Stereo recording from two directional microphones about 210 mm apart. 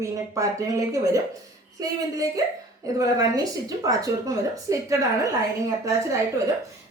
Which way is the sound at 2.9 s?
15° right (ahead or behind).